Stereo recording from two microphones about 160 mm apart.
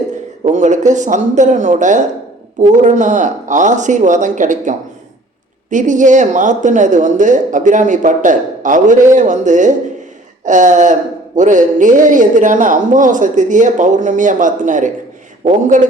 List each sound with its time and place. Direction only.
0.4 s a man's voice: 50° right (ahead or behind)
5.7 s a man's voice: 55° right (ahead or behind)